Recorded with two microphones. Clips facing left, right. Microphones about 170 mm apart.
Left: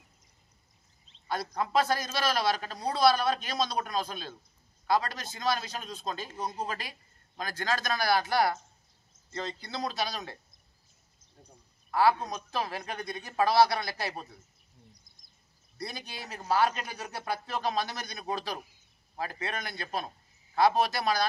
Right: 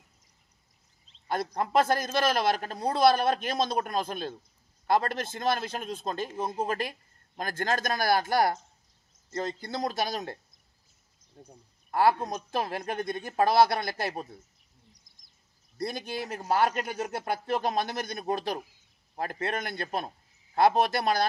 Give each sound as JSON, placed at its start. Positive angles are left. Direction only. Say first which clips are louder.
{"t": 1.6, "sound": "a man's voice", "louder": "right 2 dB", "side_deg": -50}
{"t": 11.9, "sound": "a man's voice", "louder": "right 1 dB", "side_deg": -50}
{"t": 15.8, "sound": "a man's voice", "louder": "right 7 dB", "side_deg": -50}